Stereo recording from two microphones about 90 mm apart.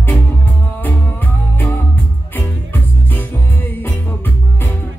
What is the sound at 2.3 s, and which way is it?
Music, 20° left (ahead or behind).